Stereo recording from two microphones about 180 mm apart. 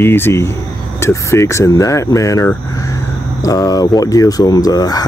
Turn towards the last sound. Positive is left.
turn(degrees=20)  # may be behind; listen again after turning